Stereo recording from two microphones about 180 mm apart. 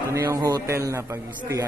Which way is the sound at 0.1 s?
15° right (ahead or behind).